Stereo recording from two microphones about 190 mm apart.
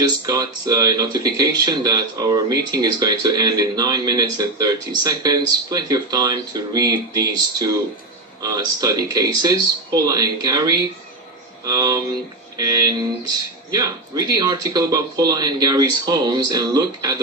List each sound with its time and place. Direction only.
0.0 s speech: 20° right (ahead or behind)